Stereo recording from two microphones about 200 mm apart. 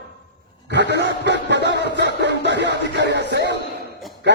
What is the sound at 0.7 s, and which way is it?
A man's voice, 60° right (ahead or behind).